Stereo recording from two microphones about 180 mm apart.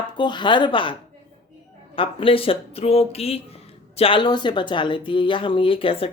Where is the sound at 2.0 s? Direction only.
30° left (ahead or behind).